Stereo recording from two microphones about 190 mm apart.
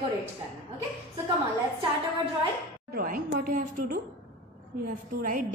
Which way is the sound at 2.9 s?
50° right (ahead or behind).